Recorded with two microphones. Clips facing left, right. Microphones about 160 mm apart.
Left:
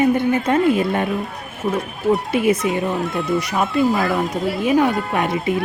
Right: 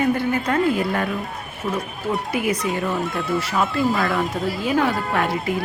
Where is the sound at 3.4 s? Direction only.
15° left (ahead or behind).